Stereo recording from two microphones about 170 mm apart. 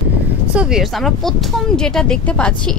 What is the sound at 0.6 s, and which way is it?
Speech, 5° right (ahead or behind).